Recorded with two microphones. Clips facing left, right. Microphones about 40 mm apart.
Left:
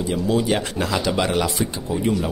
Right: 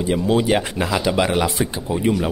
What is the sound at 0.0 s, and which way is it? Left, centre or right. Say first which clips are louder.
Speech: right 3 dB; right.